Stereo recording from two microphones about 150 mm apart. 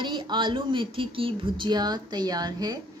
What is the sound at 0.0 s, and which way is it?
A woman's voice, 30° right (ahead or behind).